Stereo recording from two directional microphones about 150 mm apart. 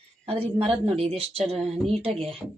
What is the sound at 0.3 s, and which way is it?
Speech, 40° right (ahead or behind).